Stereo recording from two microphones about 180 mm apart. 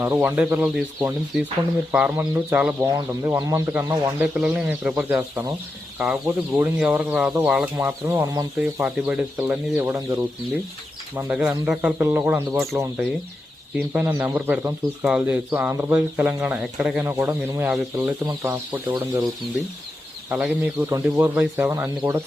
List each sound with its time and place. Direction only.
0.0 s speech: 10° right (ahead or behind)
2.8 s speech: 20° right (ahead or behind)
8.8 s speech: 5° right (ahead or behind)
20.3 s speech: 5° right (ahead or behind)